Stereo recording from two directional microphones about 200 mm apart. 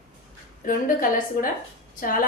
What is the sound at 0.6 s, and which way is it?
Speech, 45° left (ahead or behind).